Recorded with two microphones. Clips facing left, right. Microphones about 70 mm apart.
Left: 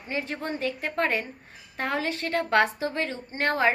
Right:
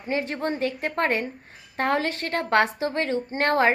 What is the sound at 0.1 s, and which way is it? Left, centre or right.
Speech, right.